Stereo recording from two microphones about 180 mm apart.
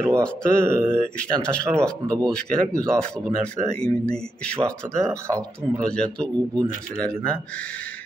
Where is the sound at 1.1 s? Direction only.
5° left (ahead or behind).